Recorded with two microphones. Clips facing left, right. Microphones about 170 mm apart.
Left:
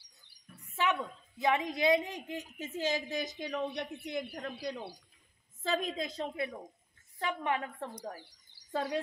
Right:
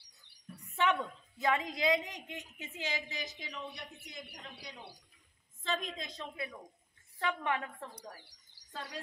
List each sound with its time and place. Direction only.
0.6 s a sound: 5° left (ahead or behind)
1.4 s a woman's voice: 20° left (ahead or behind); by 4.8 s 65° left (ahead or behind)
5.9 s speech: 35° left (ahead or behind)
7.2 s a woman's voice: 25° left (ahead or behind)
8.7 s speech: 60° left (ahead or behind)